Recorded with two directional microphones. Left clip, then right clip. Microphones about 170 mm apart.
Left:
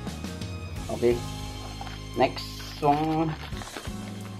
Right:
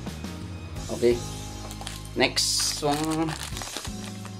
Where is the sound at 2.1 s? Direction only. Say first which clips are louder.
Right 2 dB; 10° right (ahead or behind).